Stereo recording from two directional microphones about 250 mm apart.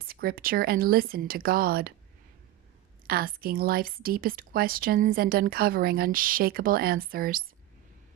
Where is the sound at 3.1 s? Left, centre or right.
Right.